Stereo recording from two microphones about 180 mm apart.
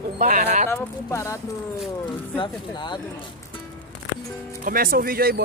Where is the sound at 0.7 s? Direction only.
15° left (ahead or behind).